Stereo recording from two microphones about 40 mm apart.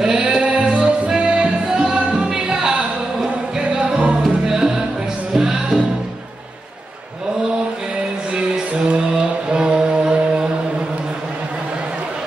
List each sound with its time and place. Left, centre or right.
0.4 s music: right
8.7 s music: right